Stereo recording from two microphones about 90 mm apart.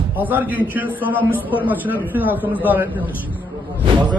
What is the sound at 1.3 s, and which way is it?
Speech, 20° left (ahead or behind).